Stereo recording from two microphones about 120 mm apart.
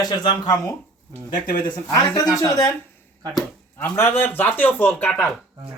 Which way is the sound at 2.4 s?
30° left (ahead or behind).